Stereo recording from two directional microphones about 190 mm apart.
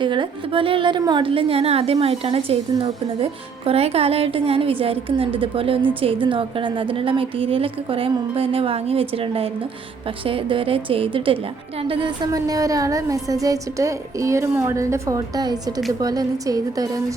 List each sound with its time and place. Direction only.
0.0 s a woman's voice: 25° right (ahead or behind)